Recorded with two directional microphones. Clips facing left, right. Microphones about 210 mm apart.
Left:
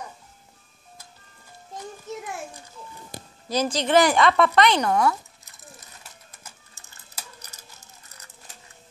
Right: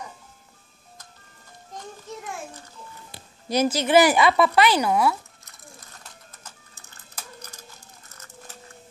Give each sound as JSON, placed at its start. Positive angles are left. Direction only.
{"t": 3.1, "sound": "music", "side_deg": 45}
{"t": 3.4, "sound": "a woman's voice", "side_deg": -10}